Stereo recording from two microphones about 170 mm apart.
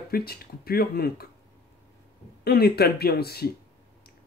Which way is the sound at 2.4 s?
65° left (ahead or behind).